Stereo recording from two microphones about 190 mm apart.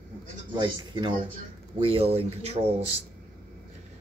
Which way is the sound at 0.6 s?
25° right (ahead or behind).